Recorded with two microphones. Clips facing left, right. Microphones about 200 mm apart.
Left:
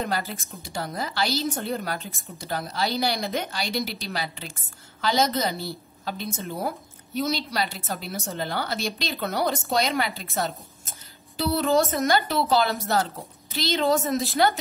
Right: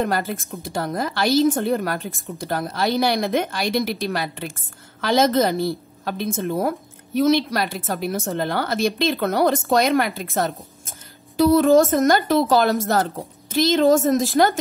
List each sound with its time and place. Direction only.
0.0 s a woman's voice: 50° right (ahead or behind)